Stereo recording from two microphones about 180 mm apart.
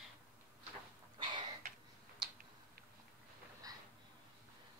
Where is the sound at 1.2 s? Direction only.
25° right (ahead or behind).